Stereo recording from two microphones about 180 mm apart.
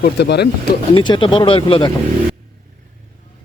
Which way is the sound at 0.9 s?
25° left (ahead or behind).